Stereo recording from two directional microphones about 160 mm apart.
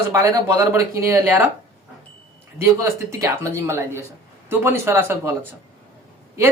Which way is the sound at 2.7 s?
15° right (ahead or behind).